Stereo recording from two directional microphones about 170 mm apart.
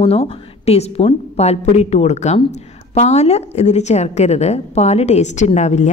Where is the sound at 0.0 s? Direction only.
35° left (ahead or behind).